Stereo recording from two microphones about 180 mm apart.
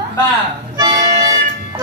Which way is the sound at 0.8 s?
25° right (ahead or behind).